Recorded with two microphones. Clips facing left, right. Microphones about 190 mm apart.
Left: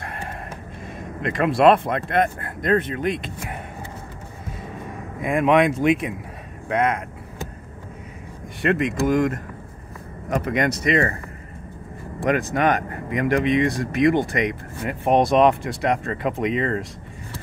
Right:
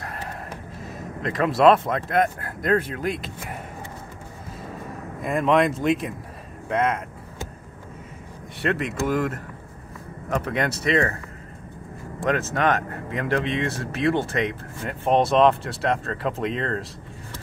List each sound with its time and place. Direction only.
0.0 s music: centre (ahead or behind)
0.9 s speech: centre (ahead or behind)
5.2 s speech: 5° left (ahead or behind)
8.6 s speech: 5° right (ahead or behind)
10.4 s speech: 10° left (ahead or behind)
12.3 s speech: centre (ahead or behind)